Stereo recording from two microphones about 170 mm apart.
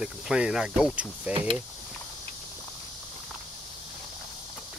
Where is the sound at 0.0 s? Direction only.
5° right (ahead or behind).